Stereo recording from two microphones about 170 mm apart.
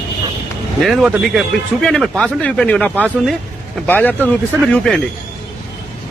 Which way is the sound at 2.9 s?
5° right (ahead or behind).